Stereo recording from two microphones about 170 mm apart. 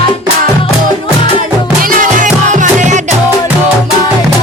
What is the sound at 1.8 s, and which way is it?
Music, 55° right (ahead or behind).